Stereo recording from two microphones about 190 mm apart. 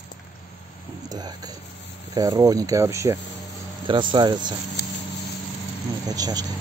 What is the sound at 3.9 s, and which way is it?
Speech, 25° right (ahead or behind).